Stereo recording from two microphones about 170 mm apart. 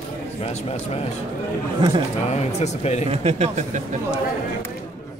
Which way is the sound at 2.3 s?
40° left (ahead or behind).